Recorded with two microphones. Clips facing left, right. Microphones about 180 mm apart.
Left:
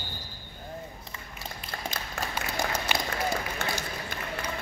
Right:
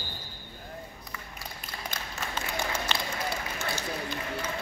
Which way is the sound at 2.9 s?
10° left (ahead or behind).